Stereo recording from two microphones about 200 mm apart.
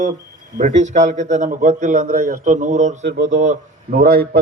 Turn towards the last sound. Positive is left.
turn(degrees=-45)  # may be behind; listen again after turning